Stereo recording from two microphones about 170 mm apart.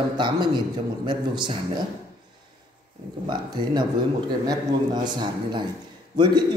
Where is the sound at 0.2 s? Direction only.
25° right (ahead or behind).